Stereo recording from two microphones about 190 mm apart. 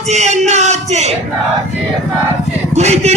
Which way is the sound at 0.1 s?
35° right (ahead or behind).